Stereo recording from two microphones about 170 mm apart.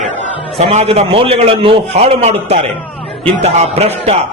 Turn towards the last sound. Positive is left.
turn(degrees=-35)  # may be behind; listen again after turning